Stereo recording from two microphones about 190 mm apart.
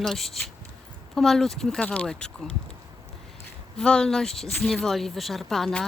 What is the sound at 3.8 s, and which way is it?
Speech, 5° left (ahead or behind).